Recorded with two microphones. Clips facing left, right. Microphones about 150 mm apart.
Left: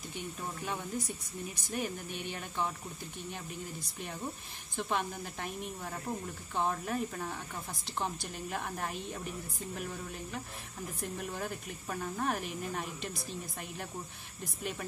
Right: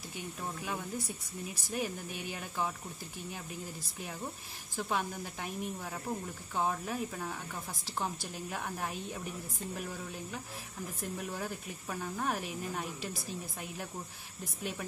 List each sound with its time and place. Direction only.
0.1 s speech: 5° right (ahead or behind)
4.7 s speech: centre (ahead or behind)
11.0 s speech: centre (ahead or behind)